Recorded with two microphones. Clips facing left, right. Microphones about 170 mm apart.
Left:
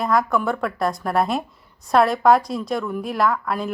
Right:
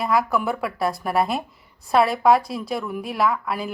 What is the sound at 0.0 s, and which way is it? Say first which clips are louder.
A woman's voice: left 1 dB; 5° right (ahead or behind).